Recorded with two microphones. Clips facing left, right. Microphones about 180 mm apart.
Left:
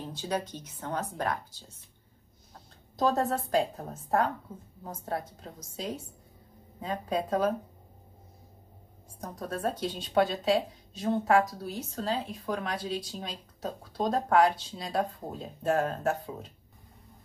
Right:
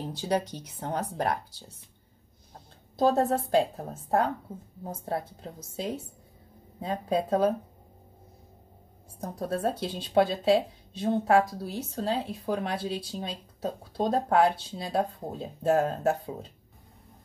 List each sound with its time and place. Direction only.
0.3 s speech: 30° right (ahead or behind)
2.5 s speech: 30° right (ahead or behind)
9.4 s speech: 30° right (ahead or behind)